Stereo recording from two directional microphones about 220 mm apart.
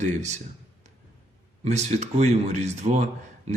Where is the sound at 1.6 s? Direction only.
30° right (ahead or behind).